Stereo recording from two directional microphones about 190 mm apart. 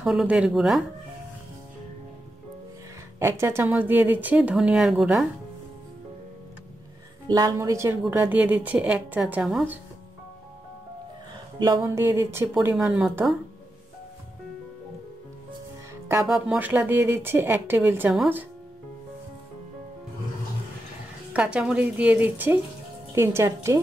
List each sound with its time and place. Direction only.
0.0 s speech: 5° right (ahead or behind)
3.2 s speech: 15° right (ahead or behind)
7.2 s speech: 20° right (ahead or behind); by 9.8 s 5° right (ahead or behind)
11.6 s speech: 15° right (ahead or behind)
16.3 s speech: 5° right (ahead or behind)
21.3 s speech: 5° right (ahead or behind)